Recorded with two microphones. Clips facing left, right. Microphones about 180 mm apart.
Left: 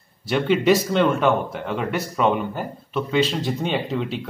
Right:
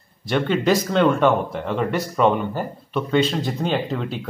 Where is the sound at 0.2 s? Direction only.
5° left (ahead or behind).